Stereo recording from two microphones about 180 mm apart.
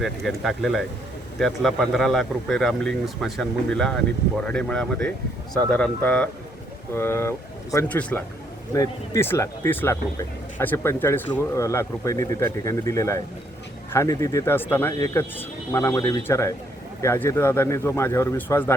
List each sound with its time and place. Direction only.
0.0 s speech: centre (ahead or behind)